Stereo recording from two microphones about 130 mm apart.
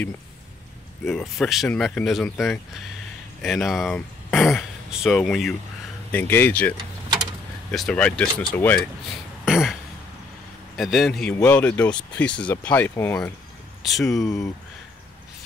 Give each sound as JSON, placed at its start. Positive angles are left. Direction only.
{"t": 1.4, "sound": "speech", "side_deg": 0}
{"t": 6.1, "sound": "speech", "side_deg": 15}
{"t": 7.7, "sound": "speech", "side_deg": 5}
{"t": 9.4, "sound": "throat clearing", "side_deg": -5}
{"t": 10.8, "sound": "speech", "side_deg": 0}
{"t": 13.8, "sound": "speech", "side_deg": 0}
{"t": 14.1, "sound": "speech", "side_deg": 25}